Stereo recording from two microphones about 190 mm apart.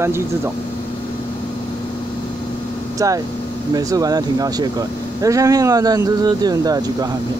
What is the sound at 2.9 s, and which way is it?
Speech, 20° right (ahead or behind).